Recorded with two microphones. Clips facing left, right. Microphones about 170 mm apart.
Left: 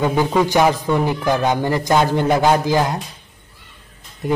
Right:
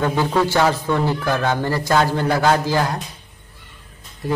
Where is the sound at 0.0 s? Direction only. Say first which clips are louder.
Left 2 dB; 15° left (ahead or behind).